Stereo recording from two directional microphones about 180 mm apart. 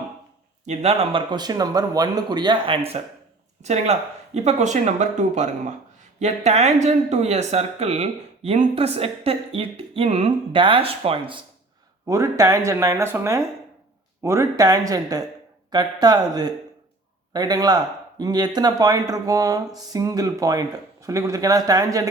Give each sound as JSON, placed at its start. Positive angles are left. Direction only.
{"t": 0.6, "sound": "speech", "side_deg": -35}
{"t": 12.0, "sound": "speech", "side_deg": -15}
{"t": 17.3, "sound": "speech", "side_deg": -20}